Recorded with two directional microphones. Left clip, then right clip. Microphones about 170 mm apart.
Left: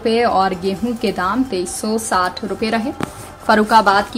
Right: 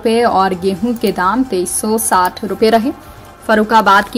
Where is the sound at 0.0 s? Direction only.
20° right (ahead or behind).